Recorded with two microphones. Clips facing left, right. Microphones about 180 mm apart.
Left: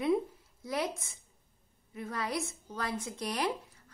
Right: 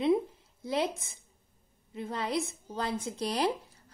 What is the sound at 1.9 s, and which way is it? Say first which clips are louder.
A woman's voice: right 3 dB; 25° right (ahead or behind).